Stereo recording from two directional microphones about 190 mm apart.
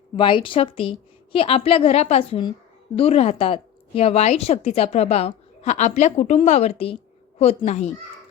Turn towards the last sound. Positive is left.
turn(degrees=35)  # may be behind; listen again after turning